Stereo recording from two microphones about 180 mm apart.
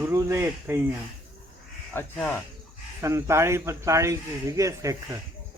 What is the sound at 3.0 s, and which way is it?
Speech, 15° right (ahead or behind).